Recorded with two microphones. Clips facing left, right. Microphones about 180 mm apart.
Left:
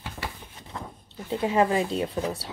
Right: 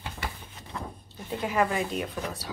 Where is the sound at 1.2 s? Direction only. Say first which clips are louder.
Left 4 dB; 25° left (ahead or behind).